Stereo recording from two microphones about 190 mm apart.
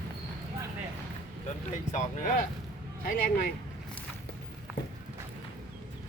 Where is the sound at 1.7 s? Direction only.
40° left (ahead or behind).